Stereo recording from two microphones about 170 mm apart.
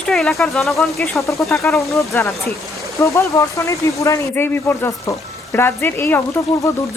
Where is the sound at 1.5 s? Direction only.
15° left (ahead or behind).